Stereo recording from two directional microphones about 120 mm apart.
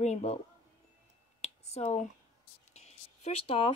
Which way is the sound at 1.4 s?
60° left (ahead or behind).